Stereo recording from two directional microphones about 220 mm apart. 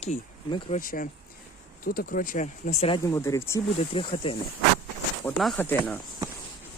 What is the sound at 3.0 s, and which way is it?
Speech, 15° left (ahead or behind).